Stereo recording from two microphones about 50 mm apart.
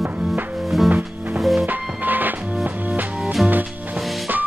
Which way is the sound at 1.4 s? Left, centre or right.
Centre.